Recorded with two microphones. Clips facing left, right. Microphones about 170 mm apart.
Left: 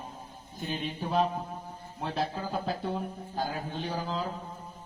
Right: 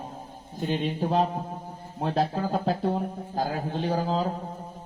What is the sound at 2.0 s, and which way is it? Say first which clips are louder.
A man's voice: right 6 dB; 45° right (ahead or behind).